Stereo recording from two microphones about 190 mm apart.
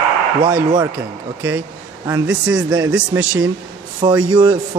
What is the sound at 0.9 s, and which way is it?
Speech, 10° right (ahead or behind).